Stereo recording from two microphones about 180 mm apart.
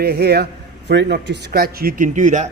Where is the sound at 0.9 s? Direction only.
80° right; by 2.4 s 40° right (ahead or behind).